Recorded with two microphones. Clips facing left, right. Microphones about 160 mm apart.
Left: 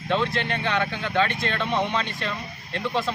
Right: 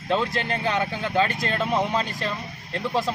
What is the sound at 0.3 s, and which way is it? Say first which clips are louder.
Speech: right 1 dB; 35° right (ahead or behind).